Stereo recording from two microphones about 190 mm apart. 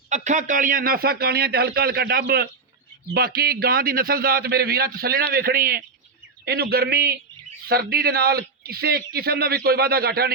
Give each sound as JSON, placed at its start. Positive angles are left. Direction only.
{"t": 0.1, "sound": "a man's voice", "side_deg": -40}